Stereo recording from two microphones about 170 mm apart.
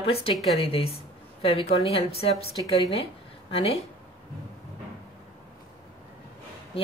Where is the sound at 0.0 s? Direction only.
35° left (ahead or behind).